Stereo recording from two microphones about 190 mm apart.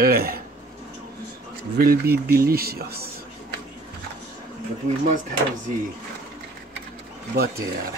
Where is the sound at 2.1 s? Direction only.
55° right (ahead or behind).